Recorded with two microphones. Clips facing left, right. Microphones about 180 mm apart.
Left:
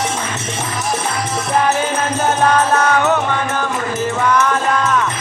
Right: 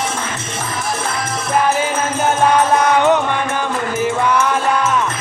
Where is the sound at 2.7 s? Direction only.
15° right (ahead or behind).